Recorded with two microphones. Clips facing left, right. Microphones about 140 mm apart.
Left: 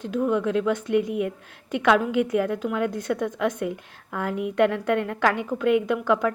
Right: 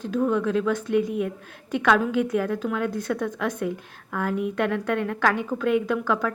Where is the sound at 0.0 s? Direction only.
15° left (ahead or behind).